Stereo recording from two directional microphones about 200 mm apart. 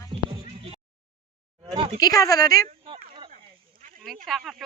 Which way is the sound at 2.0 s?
15° left (ahead or behind).